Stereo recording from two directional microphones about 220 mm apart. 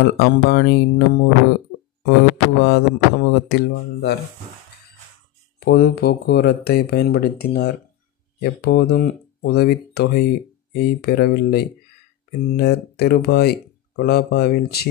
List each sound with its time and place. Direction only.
0.0 s speech: 45° left (ahead or behind)
2.0 s speech: 45° left (ahead or behind)
5.6 s speech: 45° left (ahead or behind)